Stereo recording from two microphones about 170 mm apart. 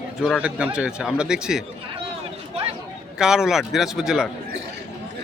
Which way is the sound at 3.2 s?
5° right (ahead or behind).